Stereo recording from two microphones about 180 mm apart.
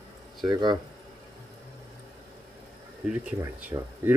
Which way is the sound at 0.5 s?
25° right (ahead or behind).